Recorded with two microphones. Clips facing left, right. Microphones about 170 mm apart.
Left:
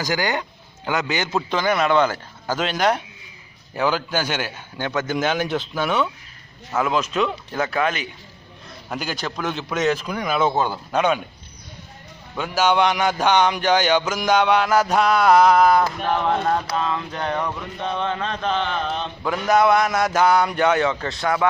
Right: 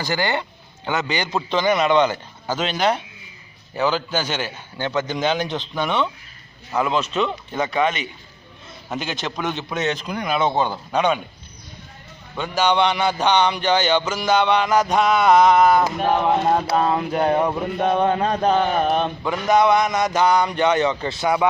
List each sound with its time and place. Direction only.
0.1 s a man's voice: centre (ahead or behind)
12.4 s speech: 5° left (ahead or behind)
16.1 s speech: 15° right (ahead or behind)
16.4 s mantra: 25° right (ahead or behind)
16.7 s a sound: 40° right (ahead or behind)
17.7 s mantra: 50° right (ahead or behind)
19.2 s a man's voice: centre (ahead or behind)